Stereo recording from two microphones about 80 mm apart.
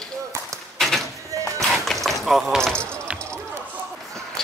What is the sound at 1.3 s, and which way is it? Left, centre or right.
Music, right.